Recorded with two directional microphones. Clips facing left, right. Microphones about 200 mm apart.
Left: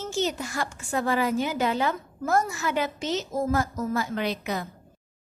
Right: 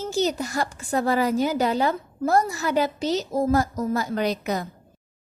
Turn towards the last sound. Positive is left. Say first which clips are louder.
# right 4 dB
turn(degrees=-40)  # may be behind; listen again after turning